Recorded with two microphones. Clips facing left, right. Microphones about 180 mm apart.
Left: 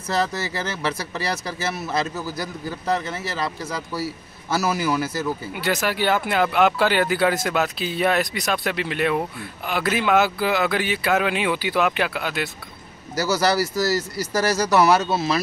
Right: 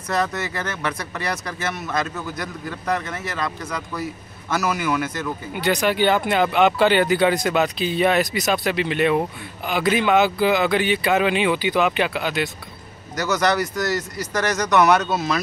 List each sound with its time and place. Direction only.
0.1 s speech: 30° left (ahead or behind)
2.9 s a man's voice: 30° left (ahead or behind)
5.5 s speech: centre (ahead or behind)